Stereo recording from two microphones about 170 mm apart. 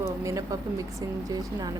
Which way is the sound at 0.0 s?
15° right (ahead or behind).